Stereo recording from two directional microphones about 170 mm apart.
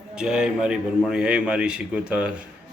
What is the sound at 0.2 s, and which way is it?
A man's voice, 5° right (ahead or behind).